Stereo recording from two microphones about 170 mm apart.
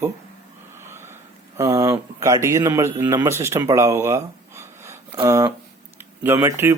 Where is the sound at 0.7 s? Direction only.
15° right (ahead or behind).